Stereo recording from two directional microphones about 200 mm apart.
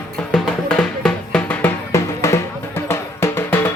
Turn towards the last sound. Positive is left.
turn(degrees=10)  # may be behind; listen again after turning